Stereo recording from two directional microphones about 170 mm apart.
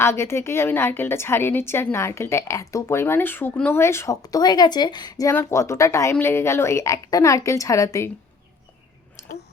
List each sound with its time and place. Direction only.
0.0 s a woman's voice: 15° left (ahead or behind)